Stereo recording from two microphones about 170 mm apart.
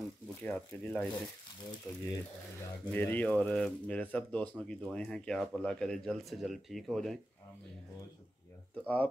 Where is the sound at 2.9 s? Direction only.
10° left (ahead or behind).